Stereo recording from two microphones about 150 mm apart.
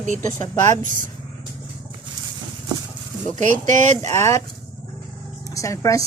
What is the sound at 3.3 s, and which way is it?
Speech, 55° right (ahead or behind).